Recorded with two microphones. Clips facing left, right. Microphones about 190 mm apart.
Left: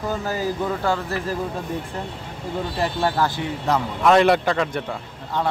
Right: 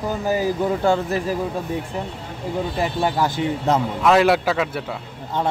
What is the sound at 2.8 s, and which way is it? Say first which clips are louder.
Speech: even; 15° right (ahead or behind).